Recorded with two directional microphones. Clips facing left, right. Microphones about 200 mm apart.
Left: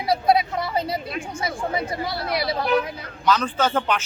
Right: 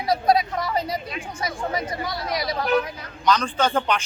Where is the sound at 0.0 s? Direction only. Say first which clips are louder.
Even; 25° left (ahead or behind).